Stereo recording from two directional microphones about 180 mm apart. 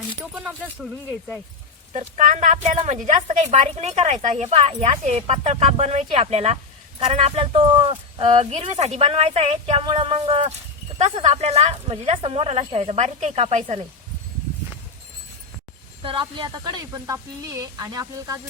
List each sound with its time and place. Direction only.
1.9 s a woman's voice: 40° right (ahead or behind)
16.0 s speech: 30° right (ahead or behind)